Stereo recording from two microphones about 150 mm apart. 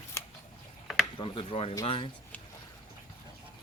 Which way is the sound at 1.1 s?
35° left (ahead or behind).